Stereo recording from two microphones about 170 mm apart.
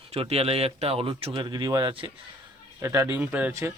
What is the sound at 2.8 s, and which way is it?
Speech, 15° right (ahead or behind).